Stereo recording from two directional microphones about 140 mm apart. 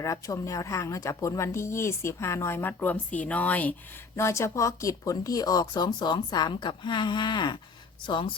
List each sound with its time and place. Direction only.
0.0 s a woman's voice: 20° left (ahead or behind)